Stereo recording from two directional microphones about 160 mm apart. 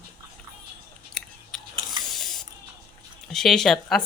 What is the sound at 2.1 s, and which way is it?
Spray, centre (ahead or behind).